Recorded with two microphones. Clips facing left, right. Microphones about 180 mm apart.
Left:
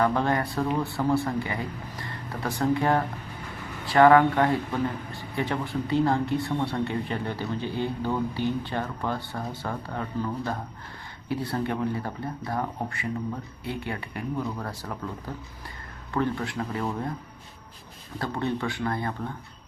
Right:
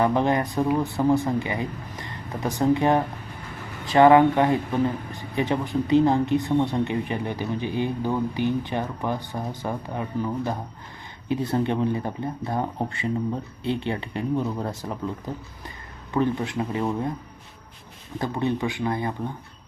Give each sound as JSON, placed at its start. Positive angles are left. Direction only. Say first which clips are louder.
{"t": 0.0, "sound": "speech", "louder": "right 3 dB", "side_deg": -20}
{"t": 18.2, "sound": "speech", "louder": "right 3 dB", "side_deg": -15}